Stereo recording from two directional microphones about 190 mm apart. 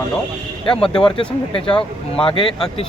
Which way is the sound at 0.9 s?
25° left (ahead or behind).